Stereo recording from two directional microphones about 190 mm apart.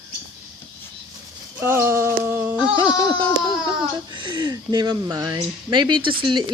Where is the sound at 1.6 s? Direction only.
10° right (ahead or behind).